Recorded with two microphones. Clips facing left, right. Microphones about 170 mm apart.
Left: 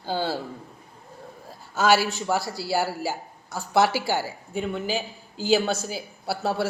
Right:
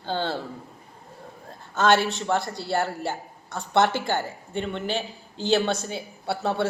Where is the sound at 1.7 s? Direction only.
5° left (ahead or behind).